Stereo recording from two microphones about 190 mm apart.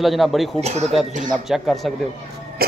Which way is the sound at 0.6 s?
35° right (ahead or behind).